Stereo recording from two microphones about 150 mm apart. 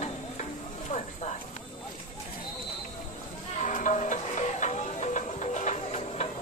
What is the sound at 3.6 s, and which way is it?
Music, 55° left (ahead or behind).